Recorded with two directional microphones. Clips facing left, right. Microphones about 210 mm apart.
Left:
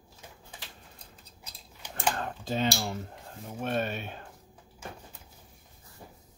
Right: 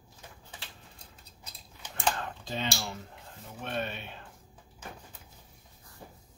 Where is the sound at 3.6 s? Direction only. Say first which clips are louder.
Left 4 dB; 45° left (ahead or behind).